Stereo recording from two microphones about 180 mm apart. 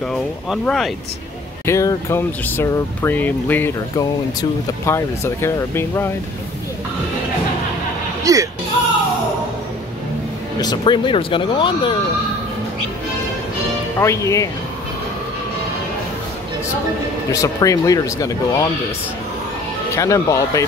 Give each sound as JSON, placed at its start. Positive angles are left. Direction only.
{"t": 0.1, "sound": "speech", "side_deg": 0}
{"t": 1.7, "sound": "speech", "side_deg": 15}
{"t": 3.9, "sound": "speech", "side_deg": 20}
{"t": 8.2, "sound": "music", "side_deg": -20}
{"t": 10.6, "sound": "speech", "side_deg": 25}
{"t": 13.9, "sound": "speech", "side_deg": 15}
{"t": 17.3, "sound": "speech", "side_deg": 20}
{"t": 20.0, "sound": "speech", "side_deg": 15}